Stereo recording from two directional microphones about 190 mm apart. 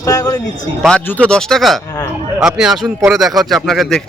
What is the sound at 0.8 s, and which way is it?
Speech, 5° left (ahead or behind).